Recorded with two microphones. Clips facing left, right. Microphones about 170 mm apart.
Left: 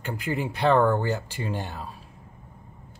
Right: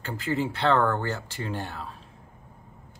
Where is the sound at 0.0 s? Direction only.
15° left (ahead or behind).